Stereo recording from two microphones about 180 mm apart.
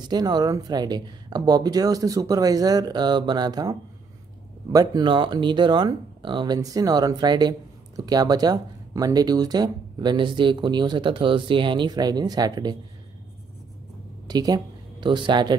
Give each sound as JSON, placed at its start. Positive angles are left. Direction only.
{"t": 0.1, "sound": "speech", "side_deg": -20}
{"t": 4.7, "sound": "speech", "side_deg": -25}
{"t": 14.2, "sound": "speech", "side_deg": -20}